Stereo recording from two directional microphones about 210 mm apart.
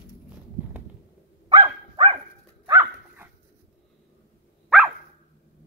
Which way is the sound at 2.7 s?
10° right (ahead or behind).